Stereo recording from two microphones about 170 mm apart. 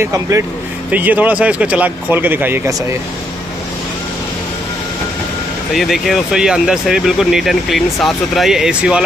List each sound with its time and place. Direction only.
0.0 s speech: 15° right (ahead or behind)
5.8 s speech: centre (ahead or behind)